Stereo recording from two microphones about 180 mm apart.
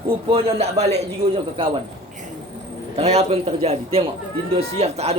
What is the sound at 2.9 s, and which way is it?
Speech, 35° right (ahead or behind).